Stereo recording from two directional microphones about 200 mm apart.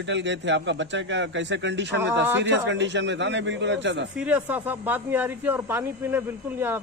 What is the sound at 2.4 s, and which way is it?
A man's voice, 60° right (ahead or behind).